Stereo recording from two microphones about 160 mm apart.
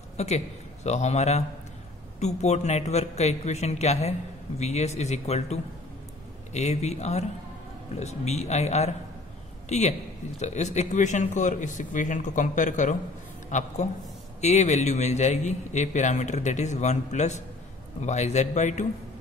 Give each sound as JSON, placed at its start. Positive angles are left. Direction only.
{"t": 0.2, "sound": "a man's voice", "side_deg": 45}